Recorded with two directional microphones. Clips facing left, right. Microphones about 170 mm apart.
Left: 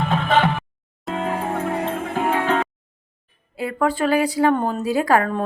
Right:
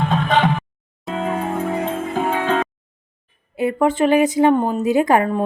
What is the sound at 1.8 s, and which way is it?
Music, 15° right (ahead or behind).